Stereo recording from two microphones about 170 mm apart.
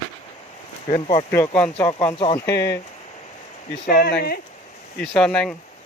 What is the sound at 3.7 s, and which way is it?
Speech, 65° left (ahead or behind).